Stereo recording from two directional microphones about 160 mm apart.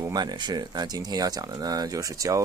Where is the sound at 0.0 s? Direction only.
25° right (ahead or behind).